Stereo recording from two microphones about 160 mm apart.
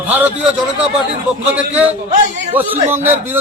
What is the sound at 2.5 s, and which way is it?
Speech, 10° right (ahead or behind).